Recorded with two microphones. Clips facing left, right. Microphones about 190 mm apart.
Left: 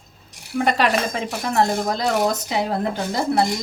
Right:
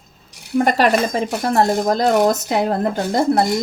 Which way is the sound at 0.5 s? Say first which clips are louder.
Right 4 dB; 45° right (ahead or behind).